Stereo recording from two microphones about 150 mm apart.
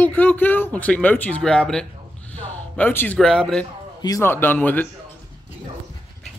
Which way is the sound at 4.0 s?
25° left (ahead or behind).